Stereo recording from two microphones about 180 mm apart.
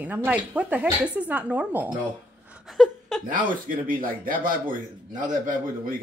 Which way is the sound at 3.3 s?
50° right (ahead or behind).